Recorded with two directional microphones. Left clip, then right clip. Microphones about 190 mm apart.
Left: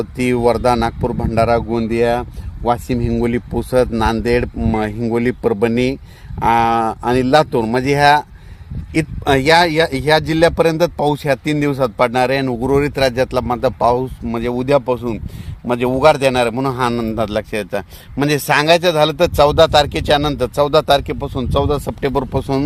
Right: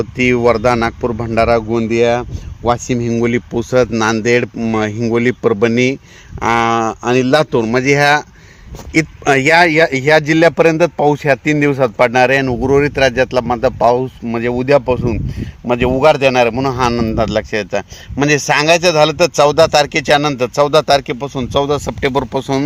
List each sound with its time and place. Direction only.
0.0 s a man's voice: 40° right (ahead or behind); by 22.6 s 5° right (ahead or behind)